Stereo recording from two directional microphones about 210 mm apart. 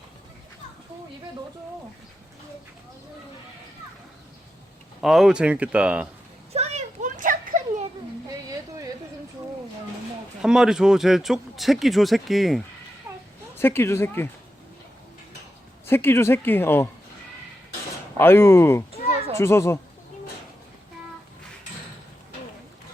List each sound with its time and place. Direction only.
4.9 s speech: centre (ahead or behind)
6.5 s a sound: 30° right (ahead or behind)
10.4 s speech: 5° right (ahead or behind)
13.1 s a sound: 10° right (ahead or behind)
13.6 s speech: 10° left (ahead or behind)
15.9 s speech: 10° left (ahead or behind)
18.2 s speech: 10° left (ahead or behind)